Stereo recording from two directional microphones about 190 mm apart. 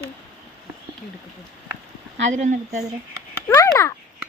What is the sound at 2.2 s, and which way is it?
Speech, 40° right (ahead or behind).